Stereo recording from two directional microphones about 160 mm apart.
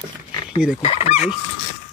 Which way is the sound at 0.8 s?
40° left (ahead or behind).